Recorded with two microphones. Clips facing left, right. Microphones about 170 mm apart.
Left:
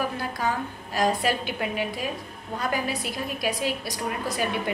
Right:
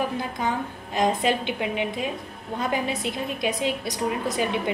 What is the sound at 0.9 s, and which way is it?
A woman's voice, 20° right (ahead or behind).